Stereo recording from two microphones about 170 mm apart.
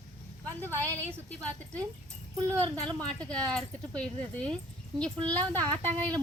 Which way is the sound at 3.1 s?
5° left (ahead or behind).